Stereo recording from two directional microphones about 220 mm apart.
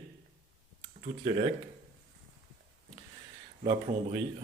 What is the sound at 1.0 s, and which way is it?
Speech, 30° right (ahead or behind).